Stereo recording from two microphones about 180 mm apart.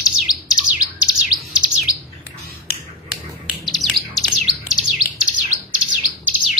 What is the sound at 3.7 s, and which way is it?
Bird, centre (ahead or behind).